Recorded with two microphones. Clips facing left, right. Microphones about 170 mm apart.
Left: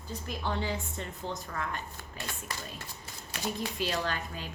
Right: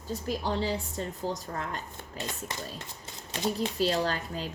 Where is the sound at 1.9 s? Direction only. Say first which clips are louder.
Right 4 dB; 20° right (ahead or behind); by 4.5 s 40° right (ahead or behind).